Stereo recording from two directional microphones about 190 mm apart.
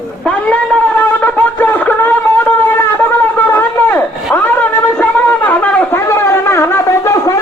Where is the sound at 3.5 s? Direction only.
10° left (ahead or behind).